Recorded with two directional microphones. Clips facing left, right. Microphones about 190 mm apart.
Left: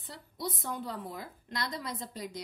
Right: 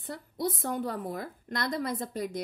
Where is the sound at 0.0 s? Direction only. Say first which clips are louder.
Right 7 dB; 50° right (ahead or behind).